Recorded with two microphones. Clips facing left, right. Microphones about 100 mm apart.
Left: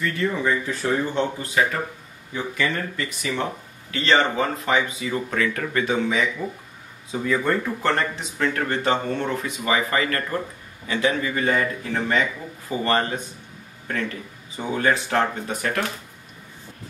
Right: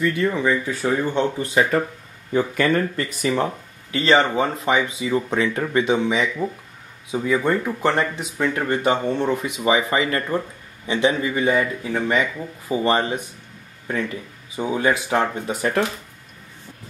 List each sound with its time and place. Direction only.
0.0 s speech: 10° right (ahead or behind)
2.3 s speech: 45° right (ahead or behind)
3.9 s speech: 5° right (ahead or behind)
4.4 s speech: 25° right (ahead or behind)